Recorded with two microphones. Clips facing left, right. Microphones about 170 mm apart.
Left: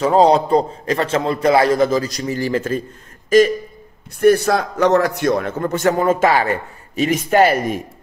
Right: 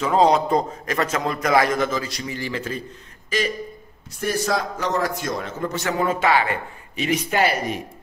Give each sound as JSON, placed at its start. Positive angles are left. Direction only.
{"t": 0.0, "sound": "a man's voice", "side_deg": 35}
{"t": 4.2, "sound": "a man's voice", "side_deg": 60}